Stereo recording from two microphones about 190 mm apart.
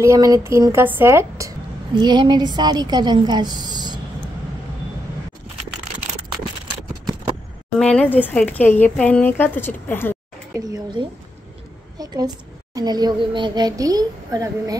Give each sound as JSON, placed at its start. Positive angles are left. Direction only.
{"t": 0.0, "sound": "a woman's voice", "side_deg": -15}
{"t": 7.8, "sound": "speech", "side_deg": 5}
{"t": 11.0, "sound": "speech", "side_deg": -25}